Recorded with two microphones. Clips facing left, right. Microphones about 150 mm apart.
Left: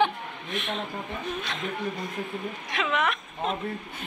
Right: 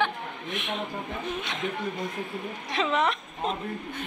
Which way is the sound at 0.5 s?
15° right (ahead or behind).